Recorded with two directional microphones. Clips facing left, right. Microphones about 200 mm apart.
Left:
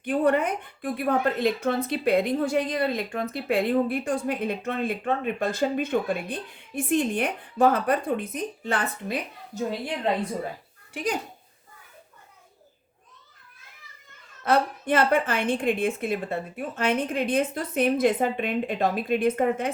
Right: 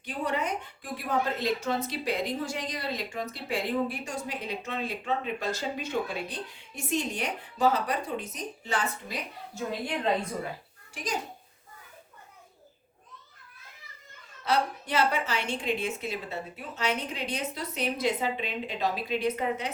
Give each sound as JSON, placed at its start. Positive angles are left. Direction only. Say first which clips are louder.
{"t": 0.0, "sound": "a woman's voice", "louder": "left 9 dB", "side_deg": 55}
{"t": 10.9, "sound": "a woman's voice", "louder": "left 6 dB", "side_deg": 60}
{"t": 14.4, "sound": "a woman's voice", "louder": "left 5 dB", "side_deg": 50}